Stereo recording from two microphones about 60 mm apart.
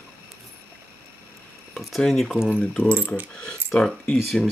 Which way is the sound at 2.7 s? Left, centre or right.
Centre.